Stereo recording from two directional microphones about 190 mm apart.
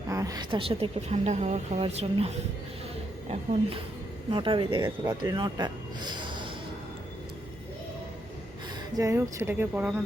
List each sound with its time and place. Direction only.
0.1 s a woman's voice: 20° right (ahead or behind)
9.0 s speech: 15° right (ahead or behind)